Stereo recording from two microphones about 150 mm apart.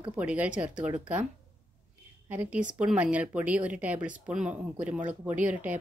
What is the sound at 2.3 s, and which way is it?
Speech, 10° right (ahead or behind).